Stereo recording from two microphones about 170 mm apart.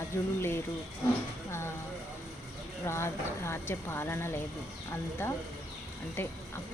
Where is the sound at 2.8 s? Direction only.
15° left (ahead or behind).